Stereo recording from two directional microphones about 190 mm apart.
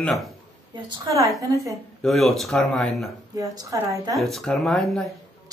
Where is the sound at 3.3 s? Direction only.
20° right (ahead or behind).